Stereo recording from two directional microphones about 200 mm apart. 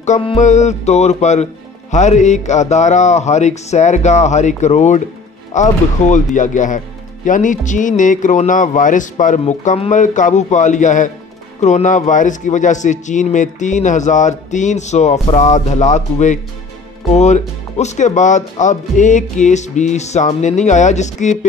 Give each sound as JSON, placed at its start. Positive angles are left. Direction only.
{"t": 0.0, "sound": "speech", "side_deg": 30}